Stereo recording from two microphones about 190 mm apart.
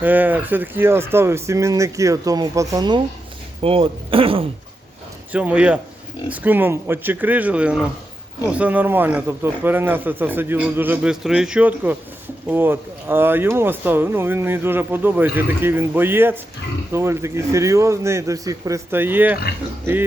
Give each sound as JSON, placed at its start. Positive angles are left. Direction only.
{"t": 0.0, "sound": "speech", "side_deg": -10}
{"t": 5.3, "sound": "speech", "side_deg": -5}